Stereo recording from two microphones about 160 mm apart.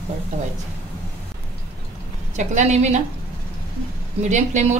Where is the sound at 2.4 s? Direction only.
50° right (ahead or behind).